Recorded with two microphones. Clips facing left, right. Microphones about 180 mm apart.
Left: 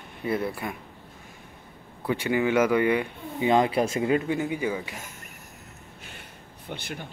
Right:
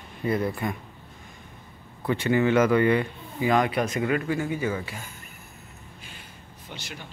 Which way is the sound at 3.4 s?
25° left (ahead or behind).